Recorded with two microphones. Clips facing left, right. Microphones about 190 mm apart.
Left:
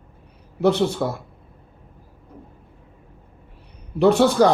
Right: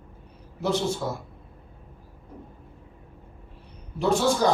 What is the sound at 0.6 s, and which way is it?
Speech, 65° left (ahead or behind).